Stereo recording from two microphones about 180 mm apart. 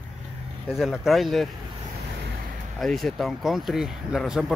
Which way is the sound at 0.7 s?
Centre (ahead or behind).